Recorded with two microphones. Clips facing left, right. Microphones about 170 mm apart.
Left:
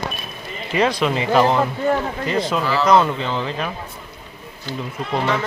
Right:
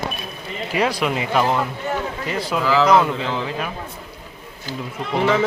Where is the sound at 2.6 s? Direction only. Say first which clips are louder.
Right 3 dB; 90° right.